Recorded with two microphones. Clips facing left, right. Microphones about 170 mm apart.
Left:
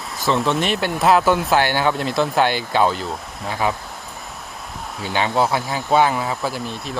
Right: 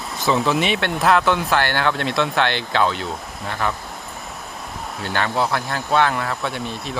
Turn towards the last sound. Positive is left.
turn(degrees=0)  # may be behind; listen again after turning